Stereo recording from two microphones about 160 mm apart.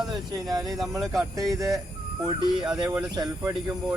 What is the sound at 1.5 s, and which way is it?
Speech, 20° right (ahead or behind).